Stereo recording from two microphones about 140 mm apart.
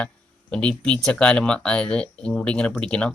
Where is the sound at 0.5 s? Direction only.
5° left (ahead or behind).